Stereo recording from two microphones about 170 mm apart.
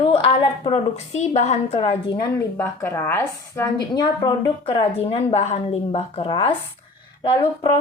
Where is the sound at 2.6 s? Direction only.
15° left (ahead or behind).